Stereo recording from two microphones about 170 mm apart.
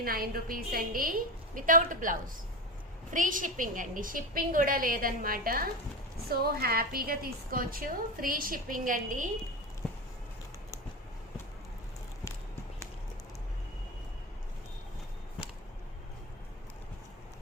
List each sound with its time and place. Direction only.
0.0 s a woman's voice: 60° right (ahead or behind)